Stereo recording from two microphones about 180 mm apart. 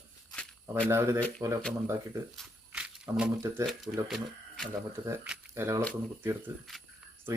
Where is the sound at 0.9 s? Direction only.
15° right (ahead or behind).